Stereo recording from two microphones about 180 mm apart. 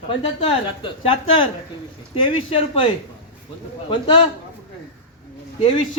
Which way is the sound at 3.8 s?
25° left (ahead or behind).